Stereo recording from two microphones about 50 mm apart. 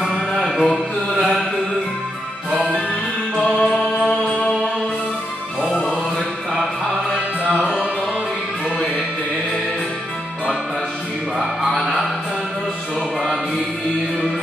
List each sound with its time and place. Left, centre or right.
0.0 s music: centre
3.4 s music: centre
4.2 s music: centre
7.2 s music: centre
11.3 s music: centre